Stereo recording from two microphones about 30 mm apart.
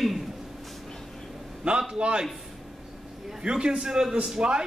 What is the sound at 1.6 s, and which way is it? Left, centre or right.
Speech, right.